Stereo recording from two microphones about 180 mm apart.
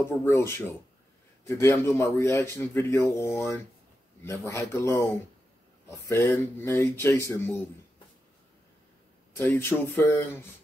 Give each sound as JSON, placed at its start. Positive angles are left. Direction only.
{"t": 0.2, "sound": "a man's voice", "side_deg": 15}
{"t": 9.3, "sound": "a man's voice", "side_deg": 15}